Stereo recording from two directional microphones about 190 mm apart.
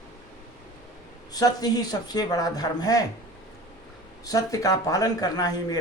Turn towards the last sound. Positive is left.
turn(degrees=20)  # may be behind; listen again after turning